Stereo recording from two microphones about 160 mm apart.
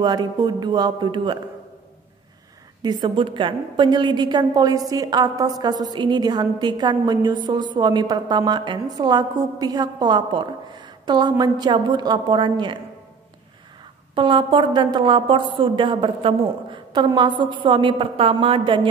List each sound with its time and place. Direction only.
0.0 s a woman's voice: 25° right (ahead or behind)
2.8 s a woman's voice: 30° right (ahead or behind)
14.1 s a woman's voice: 30° right (ahead or behind)